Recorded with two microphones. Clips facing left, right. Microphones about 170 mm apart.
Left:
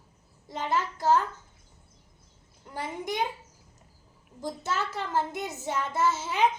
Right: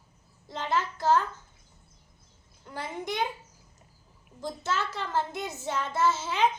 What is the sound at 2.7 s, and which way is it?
Speech, 15° left (ahead or behind).